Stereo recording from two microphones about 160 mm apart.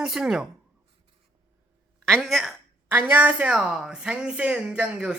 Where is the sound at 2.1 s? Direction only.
Centre (ahead or behind).